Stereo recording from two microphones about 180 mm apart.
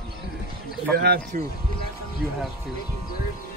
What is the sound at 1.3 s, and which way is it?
Speech, 45° right (ahead or behind).